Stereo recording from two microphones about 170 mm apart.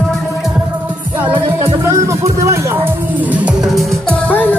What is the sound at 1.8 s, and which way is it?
Music, 15° right (ahead or behind).